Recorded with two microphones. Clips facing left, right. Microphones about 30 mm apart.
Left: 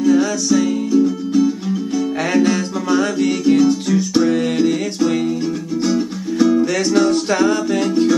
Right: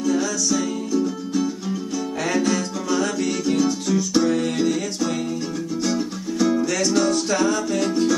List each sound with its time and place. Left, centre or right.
0.0 s music: left
1.0 s music: centre
2.3 s music: left
6.9 s music: left